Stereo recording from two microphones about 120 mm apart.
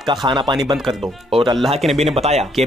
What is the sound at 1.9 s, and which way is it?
Speech, 60° right (ahead or behind).